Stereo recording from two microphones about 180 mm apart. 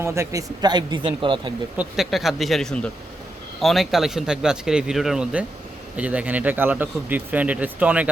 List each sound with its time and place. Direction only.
0.0 s a man's voice: 15° right (ahead or behind)
1.7 s speech: 5° right (ahead or behind)